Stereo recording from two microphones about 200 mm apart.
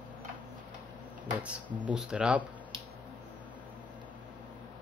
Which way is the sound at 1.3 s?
5° right (ahead or behind).